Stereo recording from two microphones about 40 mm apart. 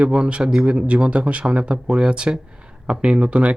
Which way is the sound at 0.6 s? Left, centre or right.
Right.